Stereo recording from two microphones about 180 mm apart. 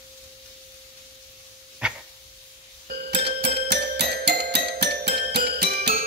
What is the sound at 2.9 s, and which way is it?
Music, 60° right (ahead or behind).